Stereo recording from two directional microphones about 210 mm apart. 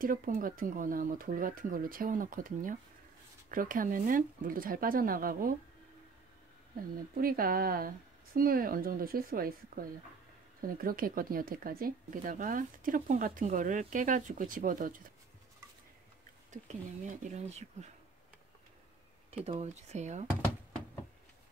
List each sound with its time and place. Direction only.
0.0 s speech: 40° right (ahead or behind)
7.2 s a woman's voice: 45° right (ahead or behind)
16.6 s speech: 35° right (ahead or behind)
19.4 s speech: 30° right (ahead or behind)